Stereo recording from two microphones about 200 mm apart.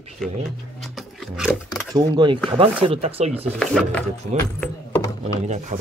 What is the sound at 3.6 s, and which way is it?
Speech, 5° left (ahead or behind).